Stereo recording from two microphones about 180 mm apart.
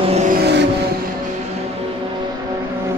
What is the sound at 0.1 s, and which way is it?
Vehicle, 40° right (ahead or behind).